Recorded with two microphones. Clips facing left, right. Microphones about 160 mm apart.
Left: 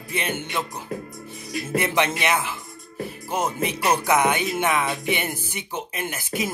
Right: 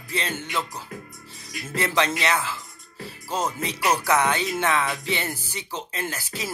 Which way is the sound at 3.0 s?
15° left (ahead or behind).